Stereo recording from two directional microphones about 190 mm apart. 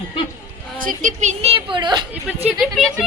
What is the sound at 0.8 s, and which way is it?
A woman's voice, 45° right (ahead or behind).